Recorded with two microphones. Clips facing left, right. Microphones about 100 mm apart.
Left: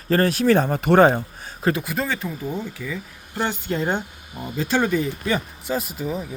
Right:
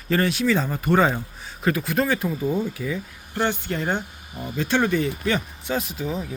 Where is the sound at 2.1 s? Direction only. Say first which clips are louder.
Right 4 dB; 10° right (ahead or behind).